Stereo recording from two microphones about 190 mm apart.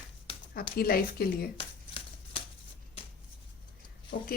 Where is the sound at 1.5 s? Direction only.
30° left (ahead or behind).